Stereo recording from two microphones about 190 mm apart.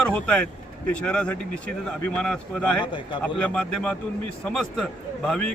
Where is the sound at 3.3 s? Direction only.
5° left (ahead or behind).